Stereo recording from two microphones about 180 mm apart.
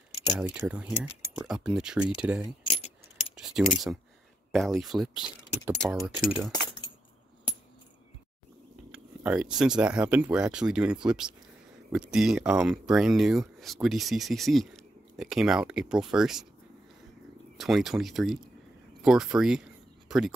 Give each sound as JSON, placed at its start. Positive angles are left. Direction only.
{"t": 0.5, "sound": "speech", "side_deg": -5}
{"t": 2.6, "sound": "keys jangling", "side_deg": 30}
{"t": 3.4, "sound": "speech", "side_deg": -5}
{"t": 8.9, "sound": "speech", "side_deg": -5}
{"t": 17.6, "sound": "speech", "side_deg": 0}